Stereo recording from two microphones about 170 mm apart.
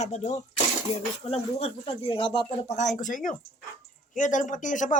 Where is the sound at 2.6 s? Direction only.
45° left (ahead or behind).